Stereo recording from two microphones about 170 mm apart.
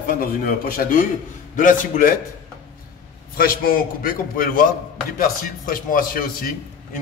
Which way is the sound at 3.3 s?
60° left (ahead or behind).